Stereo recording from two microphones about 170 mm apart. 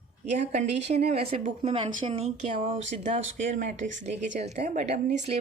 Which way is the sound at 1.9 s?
50° right (ahead or behind).